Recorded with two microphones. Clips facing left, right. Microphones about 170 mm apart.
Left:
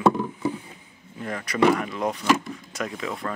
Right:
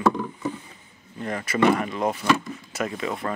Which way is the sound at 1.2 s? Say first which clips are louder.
Even; centre (ahead or behind).